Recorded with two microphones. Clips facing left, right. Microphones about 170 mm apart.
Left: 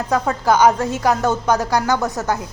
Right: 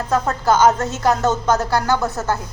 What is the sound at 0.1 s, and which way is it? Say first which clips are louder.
A woman's voice: even; 10° left (ahead or behind).